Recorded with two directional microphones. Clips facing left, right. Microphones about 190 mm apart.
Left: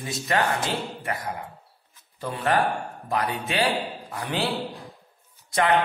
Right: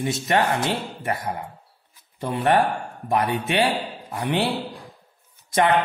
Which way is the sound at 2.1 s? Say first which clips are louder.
Right 4 dB; 25° right (ahead or behind).